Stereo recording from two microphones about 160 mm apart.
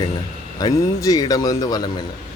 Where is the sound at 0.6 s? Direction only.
25° left (ahead or behind).